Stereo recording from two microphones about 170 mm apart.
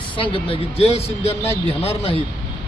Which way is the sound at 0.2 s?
30° left (ahead or behind).